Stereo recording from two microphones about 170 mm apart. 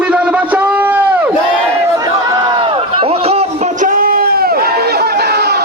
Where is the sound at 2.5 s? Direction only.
30° right (ahead or behind).